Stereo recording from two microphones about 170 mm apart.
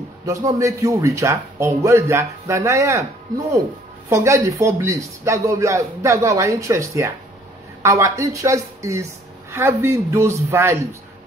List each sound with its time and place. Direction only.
0.3 s a woman's voice: 20° right (ahead or behind)
4.1 s a woman's voice: 15° right (ahead or behind)